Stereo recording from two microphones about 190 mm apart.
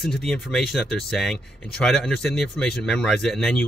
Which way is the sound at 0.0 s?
Centre (ahead or behind).